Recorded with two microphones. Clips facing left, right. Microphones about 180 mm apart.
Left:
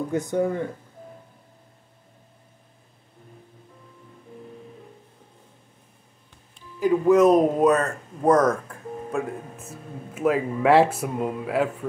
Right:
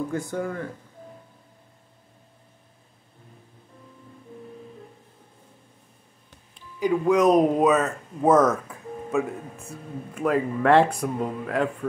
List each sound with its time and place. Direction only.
0.1 s speech: 20° left (ahead or behind)
6.8 s speech: centre (ahead or behind)